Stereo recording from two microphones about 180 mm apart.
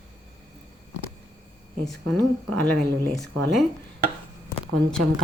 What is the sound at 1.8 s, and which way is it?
Speech, 5° left (ahead or behind).